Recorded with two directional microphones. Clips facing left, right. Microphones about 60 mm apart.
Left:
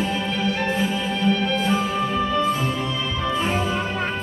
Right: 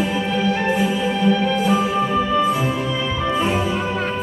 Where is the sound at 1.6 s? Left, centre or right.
Centre.